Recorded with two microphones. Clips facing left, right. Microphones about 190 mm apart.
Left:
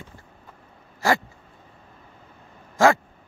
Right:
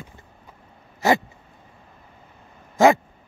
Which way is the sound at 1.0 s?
20° right (ahead or behind).